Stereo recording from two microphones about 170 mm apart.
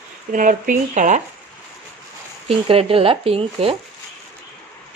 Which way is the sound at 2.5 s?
35° right (ahead or behind).